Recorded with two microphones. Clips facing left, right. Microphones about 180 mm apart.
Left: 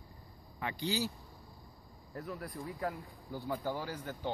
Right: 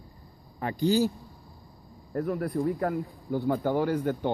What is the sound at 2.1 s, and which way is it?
Speech, 55° right (ahead or behind).